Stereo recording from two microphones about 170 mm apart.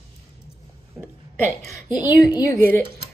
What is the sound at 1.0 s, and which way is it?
Speech, centre (ahead or behind).